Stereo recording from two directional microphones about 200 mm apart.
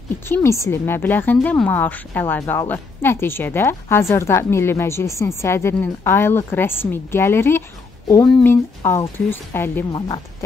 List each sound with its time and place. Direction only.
0.3 s a woman's voice: 15° left (ahead or behind)
9.9 s speech: 25° left (ahead or behind)